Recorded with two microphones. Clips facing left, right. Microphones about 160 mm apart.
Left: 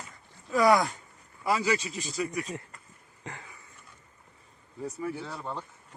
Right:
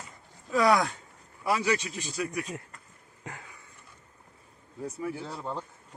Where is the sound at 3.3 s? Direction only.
10° right (ahead or behind).